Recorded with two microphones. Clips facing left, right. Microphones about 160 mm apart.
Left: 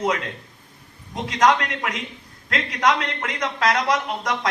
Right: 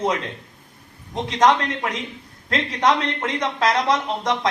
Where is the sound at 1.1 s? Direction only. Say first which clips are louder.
Right 1 dB; 30° right (ahead or behind).